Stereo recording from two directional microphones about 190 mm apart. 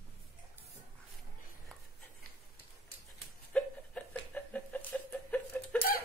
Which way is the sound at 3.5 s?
5° left (ahead or behind).